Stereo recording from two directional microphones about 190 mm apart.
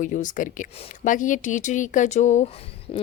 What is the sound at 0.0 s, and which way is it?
Speech, 40° left (ahead or behind).